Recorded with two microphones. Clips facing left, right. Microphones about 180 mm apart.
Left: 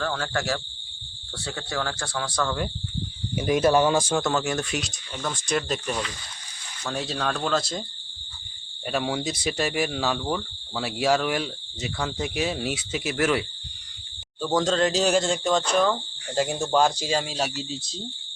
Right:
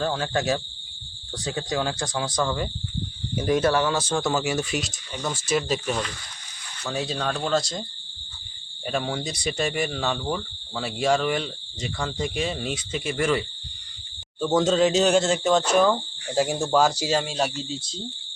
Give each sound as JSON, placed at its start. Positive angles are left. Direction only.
{"t": 0.0, "sound": "speech", "side_deg": -20}
{"t": 3.3, "sound": "speech", "side_deg": 10}
{"t": 4.2, "sound": "speech", "side_deg": 0}
{"t": 8.9, "sound": "speech", "side_deg": 5}
{"t": 14.4, "sound": "speech", "side_deg": -5}